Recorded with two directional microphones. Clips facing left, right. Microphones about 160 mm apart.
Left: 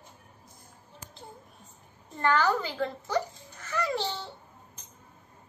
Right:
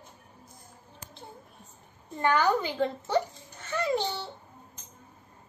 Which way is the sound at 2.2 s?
15° right (ahead or behind).